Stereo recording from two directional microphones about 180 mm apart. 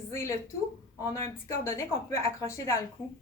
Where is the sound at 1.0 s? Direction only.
15° left (ahead or behind).